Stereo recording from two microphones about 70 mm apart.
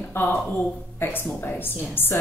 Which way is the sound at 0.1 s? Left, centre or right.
Left.